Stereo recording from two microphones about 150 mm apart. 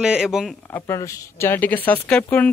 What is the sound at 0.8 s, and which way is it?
Speech, 20° left (ahead or behind).